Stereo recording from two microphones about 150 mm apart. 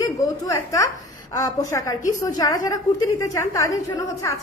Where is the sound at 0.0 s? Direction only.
20° left (ahead or behind).